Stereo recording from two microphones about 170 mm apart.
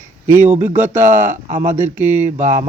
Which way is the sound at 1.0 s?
45° right (ahead or behind).